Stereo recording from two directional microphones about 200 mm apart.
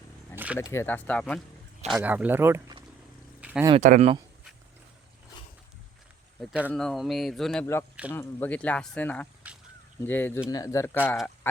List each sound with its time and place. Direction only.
0.3 s a sound: 5° right (ahead or behind)
0.6 s speech: 15° left (ahead or behind)
2.0 s speech: 10° right (ahead or behind)
3.4 s a sound: 5° right (ahead or behind)
3.8 s speech: 40° right (ahead or behind)
6.4 s speech: 5° right (ahead or behind)
9.5 s duck: 5° right (ahead or behind)
10.0 s speech: 10° left (ahead or behind)